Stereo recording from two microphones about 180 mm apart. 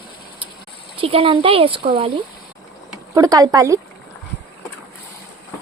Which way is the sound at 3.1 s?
20° right (ahead or behind).